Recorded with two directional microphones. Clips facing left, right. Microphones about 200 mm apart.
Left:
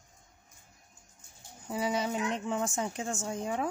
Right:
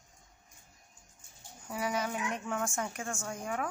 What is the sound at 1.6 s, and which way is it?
Speech, 25° left (ahead or behind).